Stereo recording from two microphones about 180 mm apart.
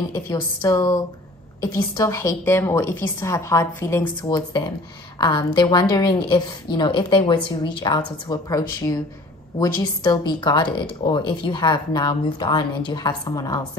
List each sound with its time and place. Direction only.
0.1 s a woman's voice: 20° left (ahead or behind)
2.0 s a woman's voice: 15° left (ahead or behind)